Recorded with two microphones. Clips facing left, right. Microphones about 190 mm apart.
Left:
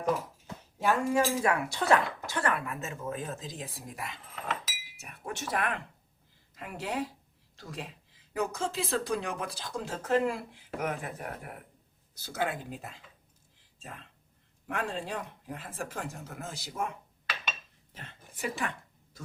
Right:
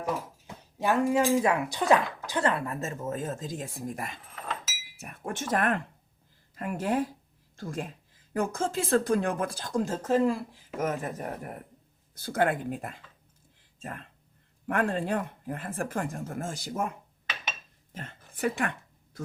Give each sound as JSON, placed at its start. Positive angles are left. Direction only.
{"t": 0.4, "sound": "speech", "side_deg": -20}
{"t": 2.8, "sound": "speech", "side_deg": -40}
{"t": 12.1, "sound": "speech", "side_deg": -55}
{"t": 17.9, "sound": "a sound", "side_deg": -50}